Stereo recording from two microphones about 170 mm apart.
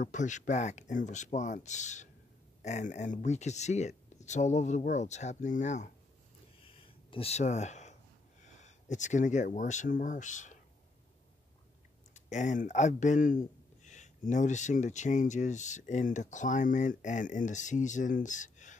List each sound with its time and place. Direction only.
0.0 s speech: 45° left (ahead or behind)
6.6 s a sound: 30° left (ahead or behind)
8.5 s speech: 45° left (ahead or behind)
12.1 s speech: 45° left (ahead or behind)